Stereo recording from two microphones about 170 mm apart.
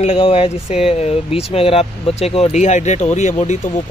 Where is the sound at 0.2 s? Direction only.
35° left (ahead or behind).